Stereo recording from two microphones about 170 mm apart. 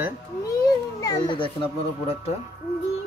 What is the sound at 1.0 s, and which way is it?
Speech, 25° left (ahead or behind).